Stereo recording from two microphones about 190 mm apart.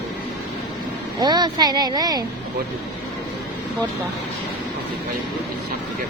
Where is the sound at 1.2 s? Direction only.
20° right (ahead or behind).